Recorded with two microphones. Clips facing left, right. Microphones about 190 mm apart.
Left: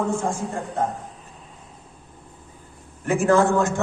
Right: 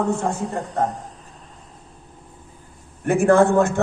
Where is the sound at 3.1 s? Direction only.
60° right (ahead or behind).